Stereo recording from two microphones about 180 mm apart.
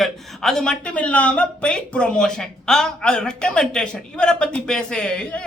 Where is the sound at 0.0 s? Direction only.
Centre (ahead or behind).